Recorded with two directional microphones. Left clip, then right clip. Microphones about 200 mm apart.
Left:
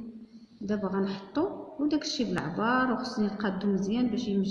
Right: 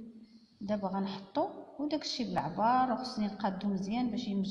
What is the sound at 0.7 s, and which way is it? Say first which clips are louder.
A woman's voice: left 4 dB; 50° right (ahead or behind).